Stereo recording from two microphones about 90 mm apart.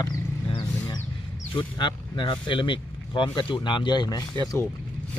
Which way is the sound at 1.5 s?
65° left (ahead or behind).